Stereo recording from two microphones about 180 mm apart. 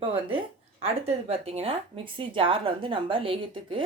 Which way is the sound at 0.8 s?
35° right (ahead or behind).